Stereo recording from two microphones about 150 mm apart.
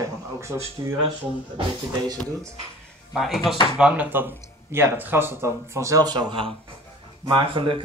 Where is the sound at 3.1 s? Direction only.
Centre (ahead or behind).